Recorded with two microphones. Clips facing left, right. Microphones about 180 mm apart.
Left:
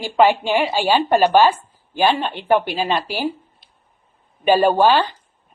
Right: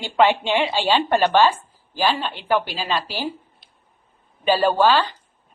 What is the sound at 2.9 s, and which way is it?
Speech, 15° left (ahead or behind).